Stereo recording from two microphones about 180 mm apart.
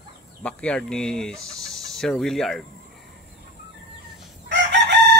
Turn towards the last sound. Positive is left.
turn(degrees=-75)  # may be behind; listen again after turning